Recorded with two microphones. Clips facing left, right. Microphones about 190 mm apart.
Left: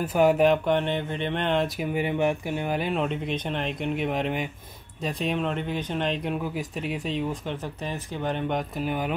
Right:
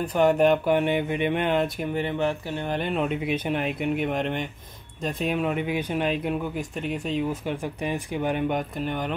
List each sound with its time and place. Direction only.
0.0 s speech: 5° left (ahead or behind)
2.0 s speech: 15° left (ahead or behind)